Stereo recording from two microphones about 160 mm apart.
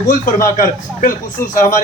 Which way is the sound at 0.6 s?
55° left (ahead or behind).